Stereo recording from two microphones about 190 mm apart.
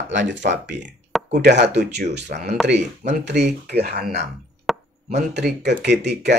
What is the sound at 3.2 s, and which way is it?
Speech, 65° right (ahead or behind).